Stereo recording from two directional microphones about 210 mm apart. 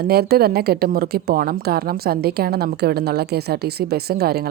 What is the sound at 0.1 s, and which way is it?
A woman's voice, 45° right (ahead or behind).